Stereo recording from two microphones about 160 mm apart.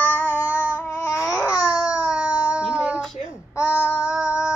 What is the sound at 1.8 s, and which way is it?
Baby cry, 5° right (ahead or behind).